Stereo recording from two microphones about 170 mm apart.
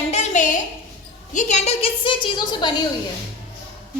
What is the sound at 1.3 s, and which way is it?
A woman's voice, 45° left (ahead or behind).